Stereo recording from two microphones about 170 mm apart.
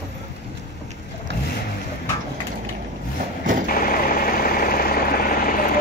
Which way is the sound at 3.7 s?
55° left (ahead or behind).